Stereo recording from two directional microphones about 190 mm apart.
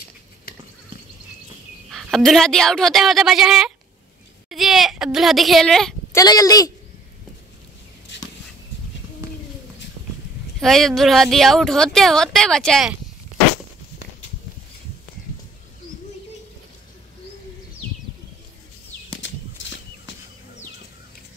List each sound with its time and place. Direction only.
1.9 s a woman's voice: centre (ahead or behind)
6.1 s speech: 20° left (ahead or behind)
10.6 s speech: centre (ahead or behind)